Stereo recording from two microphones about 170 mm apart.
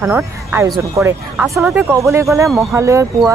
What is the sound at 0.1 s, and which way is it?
Speech, 15° right (ahead or behind).